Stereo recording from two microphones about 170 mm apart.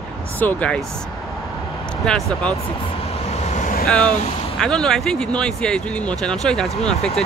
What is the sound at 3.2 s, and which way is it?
Vehicle, 40° left (ahead or behind).